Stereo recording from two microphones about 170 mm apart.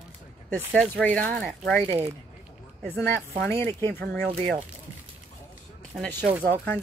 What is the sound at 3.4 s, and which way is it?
Speech, 15° left (ahead or behind).